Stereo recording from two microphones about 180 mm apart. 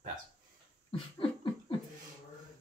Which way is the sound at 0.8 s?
30° left (ahead or behind).